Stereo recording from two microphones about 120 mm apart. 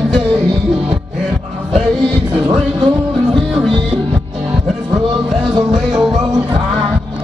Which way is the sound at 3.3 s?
Centre (ahead or behind).